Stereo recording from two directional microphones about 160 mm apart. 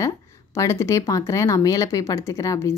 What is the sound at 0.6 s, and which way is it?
A woman's voice, 20° left (ahead or behind).